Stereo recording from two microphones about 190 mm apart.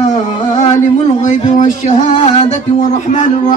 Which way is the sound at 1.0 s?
40° left (ahead or behind).